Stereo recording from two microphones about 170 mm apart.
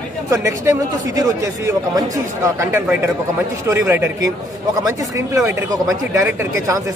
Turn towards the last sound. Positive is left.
turn(degrees=-20)  # may be behind; listen again after turning